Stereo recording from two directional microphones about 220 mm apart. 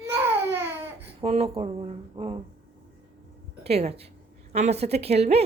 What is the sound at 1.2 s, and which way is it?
A woman's voice, 30° right (ahead or behind).